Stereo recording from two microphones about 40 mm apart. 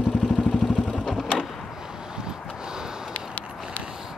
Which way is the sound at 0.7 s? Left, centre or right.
Centre.